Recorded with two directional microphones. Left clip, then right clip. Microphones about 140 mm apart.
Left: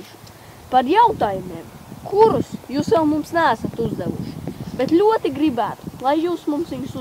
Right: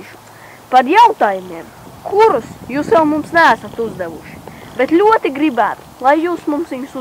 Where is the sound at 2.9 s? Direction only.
15° left (ahead or behind).